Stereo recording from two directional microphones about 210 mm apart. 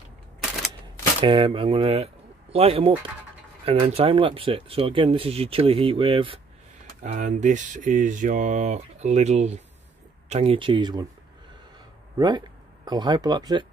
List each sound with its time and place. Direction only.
1.2 s speech: 25° right (ahead or behind)
7.0 s speech: 35° right (ahead or behind)
12.2 s speech: 20° right (ahead or behind)